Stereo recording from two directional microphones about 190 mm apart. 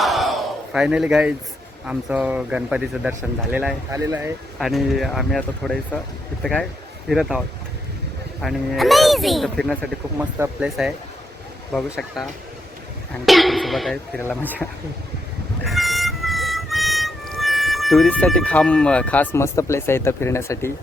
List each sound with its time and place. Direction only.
0.0 s battle cry: centre (ahead or behind)
1.9 s speech: 5° right (ahead or behind)
4.6 s speech: centre (ahead or behind)
15.6 s music: centre (ahead or behind)